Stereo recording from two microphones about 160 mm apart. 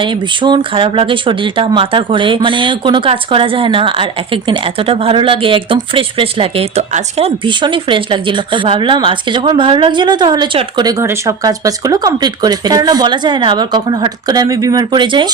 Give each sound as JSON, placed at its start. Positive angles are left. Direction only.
{"t": 0.0, "sound": "speech", "side_deg": -30}